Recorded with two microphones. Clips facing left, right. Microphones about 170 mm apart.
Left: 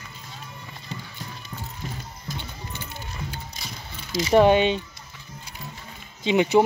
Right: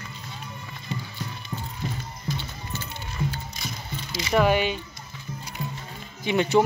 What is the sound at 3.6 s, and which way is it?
Music, 30° left (ahead or behind).